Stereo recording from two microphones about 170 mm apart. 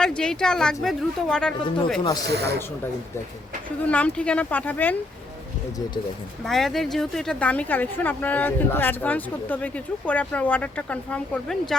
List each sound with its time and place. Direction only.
0.2 s speech: 5° left (ahead or behind)
2.2 s speech: 75° right (ahead or behind)
3.8 s a woman's voice: 10° left (ahead or behind)
6.4 s a woman's voice: centre (ahead or behind)